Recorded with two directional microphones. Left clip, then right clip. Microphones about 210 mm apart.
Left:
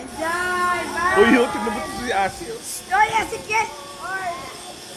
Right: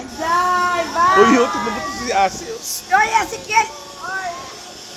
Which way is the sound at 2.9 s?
25° right (ahead or behind).